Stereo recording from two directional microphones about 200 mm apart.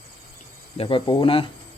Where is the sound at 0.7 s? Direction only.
25° left (ahead or behind).